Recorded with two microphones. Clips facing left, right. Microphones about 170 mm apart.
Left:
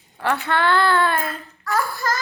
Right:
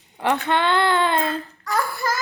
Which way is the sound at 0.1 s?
20° right (ahead or behind).